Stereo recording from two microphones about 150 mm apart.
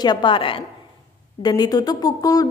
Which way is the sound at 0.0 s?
30° left (ahead or behind).